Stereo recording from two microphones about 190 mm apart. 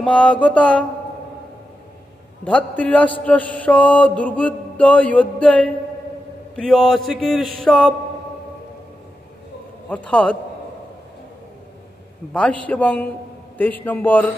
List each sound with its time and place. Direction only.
0.0 s speech: 5° left (ahead or behind)
2.4 s mantra: 5° left (ahead or behind)
6.5 s speech: 5° left (ahead or behind)
9.8 s mantra: 5° left (ahead or behind)
12.3 s speech: 5° left (ahead or behind)
12.6 s mantra: 10° left (ahead or behind)